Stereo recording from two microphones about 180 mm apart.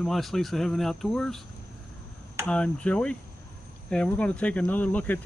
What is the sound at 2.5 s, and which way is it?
Speech, 5° left (ahead or behind).